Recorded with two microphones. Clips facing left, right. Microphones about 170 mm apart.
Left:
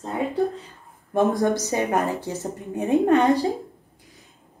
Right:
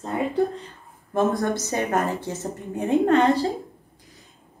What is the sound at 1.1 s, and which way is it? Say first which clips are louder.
A woman's voice: left 2 dB; 15° left (ahead or behind).